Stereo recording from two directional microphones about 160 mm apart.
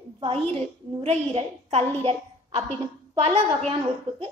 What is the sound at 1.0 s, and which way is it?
Speech, 40° right (ahead or behind).